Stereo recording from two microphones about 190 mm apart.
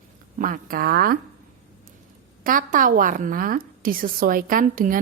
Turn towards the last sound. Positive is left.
turn(degrees=-45)  # may be behind; listen again after turning